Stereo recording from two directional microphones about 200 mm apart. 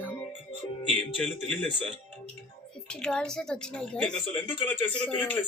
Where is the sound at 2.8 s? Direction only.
5° left (ahead or behind).